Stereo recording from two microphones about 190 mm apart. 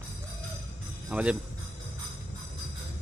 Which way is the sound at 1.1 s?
5° right (ahead or behind).